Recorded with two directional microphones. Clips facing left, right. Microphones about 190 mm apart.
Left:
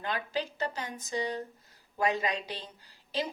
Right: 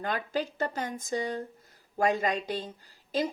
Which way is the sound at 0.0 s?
50° right (ahead or behind).